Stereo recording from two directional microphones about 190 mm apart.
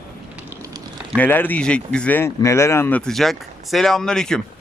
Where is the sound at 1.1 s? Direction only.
10° left (ahead or behind).